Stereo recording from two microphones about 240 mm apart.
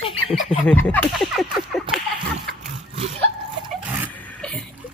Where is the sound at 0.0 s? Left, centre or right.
Left.